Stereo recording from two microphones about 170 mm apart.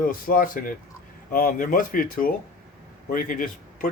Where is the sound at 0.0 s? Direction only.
55° left (ahead or behind).